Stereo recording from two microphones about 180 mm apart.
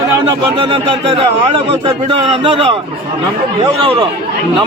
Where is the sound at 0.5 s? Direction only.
30° right (ahead or behind).